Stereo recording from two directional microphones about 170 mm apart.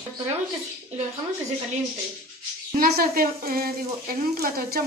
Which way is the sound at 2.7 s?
60° right (ahead or behind).